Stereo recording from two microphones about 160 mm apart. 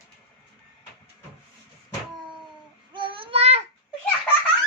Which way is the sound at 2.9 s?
30° right (ahead or behind).